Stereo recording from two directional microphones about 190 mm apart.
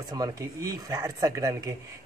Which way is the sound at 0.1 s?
20° right (ahead or behind).